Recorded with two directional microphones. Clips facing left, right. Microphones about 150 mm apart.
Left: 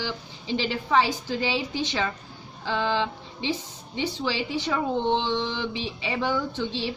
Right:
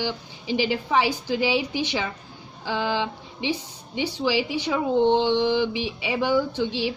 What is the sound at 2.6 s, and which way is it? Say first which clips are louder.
Speech: even; 10° right (ahead or behind).